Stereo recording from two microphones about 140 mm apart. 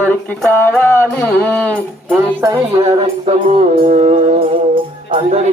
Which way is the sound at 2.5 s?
45° right (ahead or behind).